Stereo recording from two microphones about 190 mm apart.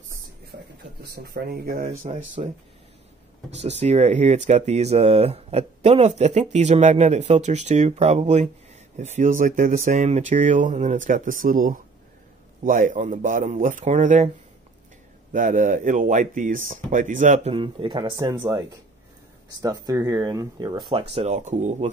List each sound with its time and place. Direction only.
0.5 s a sound: 60° right (ahead or behind)
1.0 s speech: 55° right (ahead or behind)
3.4 s speech: 35° right (ahead or behind)
15.3 s speech: 45° right (ahead or behind); by 18.6 s 20° right (ahead or behind)
19.6 s speech: 20° right (ahead or behind)
21.1 s speech: 35° right (ahead or behind)